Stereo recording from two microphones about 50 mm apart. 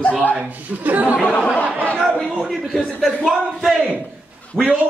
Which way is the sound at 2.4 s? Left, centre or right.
Centre.